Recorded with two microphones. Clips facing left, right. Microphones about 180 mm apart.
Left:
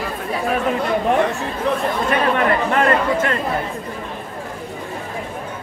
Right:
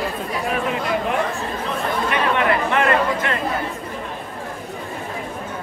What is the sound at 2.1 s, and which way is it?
Speech, 40° left (ahead or behind).